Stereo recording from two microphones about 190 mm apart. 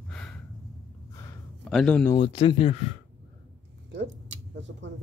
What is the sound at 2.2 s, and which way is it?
Speech, 30° left (ahead or behind).